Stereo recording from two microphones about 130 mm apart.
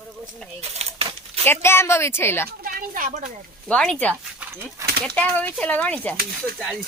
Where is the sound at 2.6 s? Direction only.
90° right.